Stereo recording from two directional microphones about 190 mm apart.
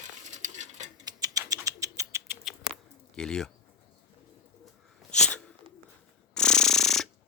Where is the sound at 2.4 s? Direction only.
Centre (ahead or behind).